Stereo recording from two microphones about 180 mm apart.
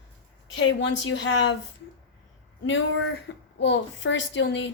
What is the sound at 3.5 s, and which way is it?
A woman's voice, 80° left.